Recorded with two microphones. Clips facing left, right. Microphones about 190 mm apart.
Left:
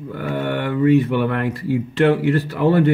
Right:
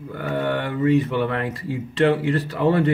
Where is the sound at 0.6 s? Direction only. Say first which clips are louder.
Left 6 dB; 60° left (ahead or behind).